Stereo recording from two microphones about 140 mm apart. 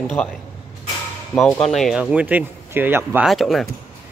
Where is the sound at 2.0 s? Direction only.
10° right (ahead or behind).